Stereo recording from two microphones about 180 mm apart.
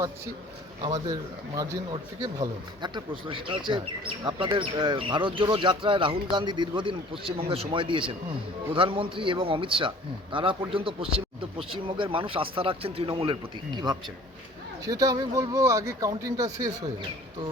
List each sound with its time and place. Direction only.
0.8 s speech: 25° right (ahead or behind)